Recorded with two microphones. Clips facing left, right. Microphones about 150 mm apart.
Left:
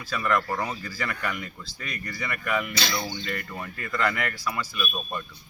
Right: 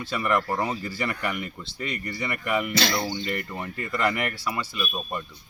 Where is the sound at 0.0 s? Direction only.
20° right (ahead or behind).